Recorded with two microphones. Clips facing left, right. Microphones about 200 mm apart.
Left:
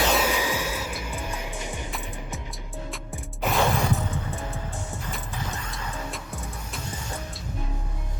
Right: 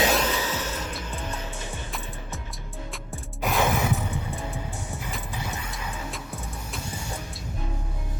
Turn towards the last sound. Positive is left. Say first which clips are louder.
# even
turn(degrees=0)  # may be behind; listen again after turning